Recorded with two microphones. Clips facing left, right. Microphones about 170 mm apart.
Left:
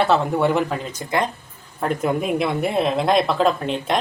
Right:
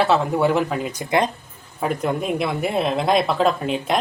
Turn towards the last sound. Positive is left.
turn(degrees=0)  # may be behind; listen again after turning